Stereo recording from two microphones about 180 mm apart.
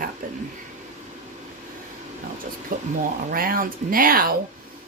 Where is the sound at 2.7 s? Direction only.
50° right (ahead or behind).